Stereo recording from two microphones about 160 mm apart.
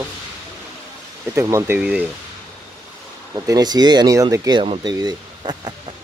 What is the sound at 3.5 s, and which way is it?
Speech, 25° right (ahead or behind).